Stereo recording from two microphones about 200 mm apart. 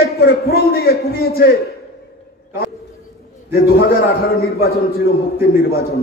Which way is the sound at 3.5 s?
50° left (ahead or behind).